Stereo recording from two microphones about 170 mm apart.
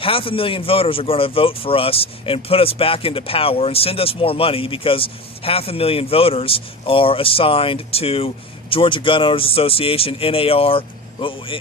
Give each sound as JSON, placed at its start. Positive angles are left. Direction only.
{"t": 0.0, "sound": "speech", "side_deg": 30}